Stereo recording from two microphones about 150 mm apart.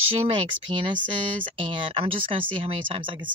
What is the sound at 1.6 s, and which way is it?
Speech, 35° right (ahead or behind).